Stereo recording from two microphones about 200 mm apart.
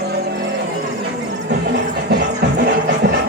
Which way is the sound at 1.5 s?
55° right (ahead or behind).